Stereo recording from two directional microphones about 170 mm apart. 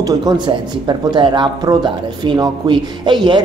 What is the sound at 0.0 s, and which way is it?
Speech, 25° right (ahead or behind).